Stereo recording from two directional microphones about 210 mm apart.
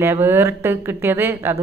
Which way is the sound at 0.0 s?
10° right (ahead or behind).